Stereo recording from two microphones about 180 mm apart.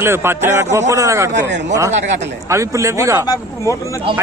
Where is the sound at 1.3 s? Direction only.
75° right (ahead or behind).